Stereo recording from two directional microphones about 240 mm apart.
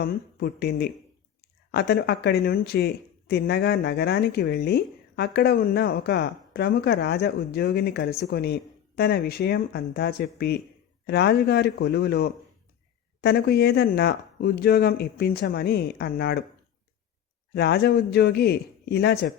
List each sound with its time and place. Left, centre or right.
0.0 s speech: left
17.5 s a man's voice: left